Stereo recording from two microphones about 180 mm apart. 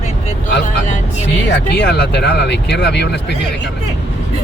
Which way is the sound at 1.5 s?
70° left (ahead or behind).